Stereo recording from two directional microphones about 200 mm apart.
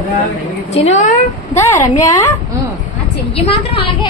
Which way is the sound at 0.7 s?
35° left (ahead or behind).